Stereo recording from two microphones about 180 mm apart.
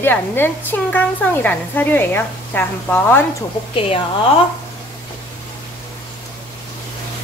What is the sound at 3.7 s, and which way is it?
Speech, 30° left (ahead or behind).